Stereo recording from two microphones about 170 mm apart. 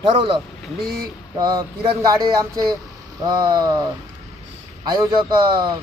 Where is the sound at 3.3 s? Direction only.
20° right (ahead or behind).